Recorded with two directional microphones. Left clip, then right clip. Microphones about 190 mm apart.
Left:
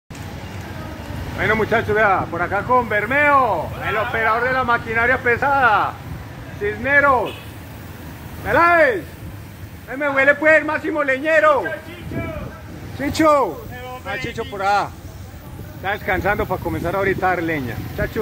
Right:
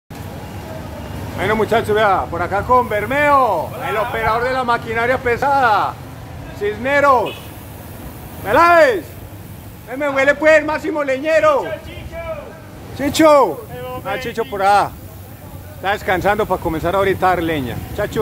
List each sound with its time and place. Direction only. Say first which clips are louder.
1.4 s speech: right 2 dB; centre (ahead or behind)
8.5 s speech: right 3 dB; 10° right (ahead or behind)
9.8 s speech: right 1 dB; 5° left (ahead or behind); by 11.5 s 20° left (ahead or behind)
13.0 s speech: right 5 dB; 25° right (ahead or behind)
15.8 s speech: right 4 dB; 20° right (ahead or behind)